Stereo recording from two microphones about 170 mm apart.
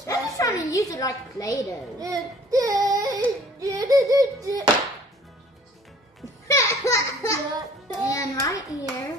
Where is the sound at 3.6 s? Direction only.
20° right (ahead or behind).